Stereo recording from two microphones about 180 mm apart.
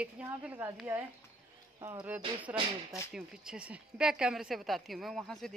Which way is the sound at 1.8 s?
20° right (ahead or behind).